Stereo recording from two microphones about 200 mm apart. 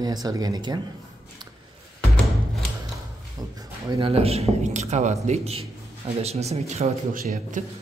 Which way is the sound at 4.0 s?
30° right (ahead or behind).